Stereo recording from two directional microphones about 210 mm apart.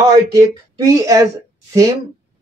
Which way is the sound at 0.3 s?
15° right (ahead or behind).